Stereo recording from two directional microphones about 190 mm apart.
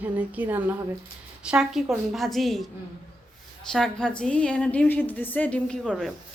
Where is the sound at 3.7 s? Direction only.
5° left (ahead or behind).